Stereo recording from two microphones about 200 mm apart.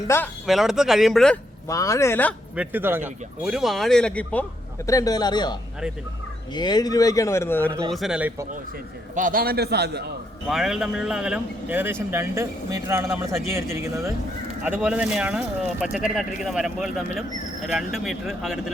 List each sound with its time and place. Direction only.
0.1 s speech: 15° left (ahead or behind)
0.4 s speech: centre (ahead or behind)
1.6 s speech: 15° left (ahead or behind)
2.6 s speech: 10° right (ahead or behind); by 4.4 s 5° left (ahead or behind)
4.9 s a man's voice: 15° left (ahead or behind)
7.9 s speech: centre (ahead or behind)
9.1 s a man's voice: 45° right (ahead or behind)
10.5 s speech: centre (ahead or behind)